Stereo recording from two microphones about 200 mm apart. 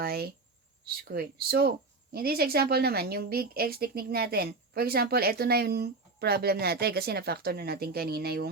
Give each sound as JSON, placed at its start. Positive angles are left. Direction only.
{"t": 0.0, "sound": "a woman's voice", "side_deg": -50}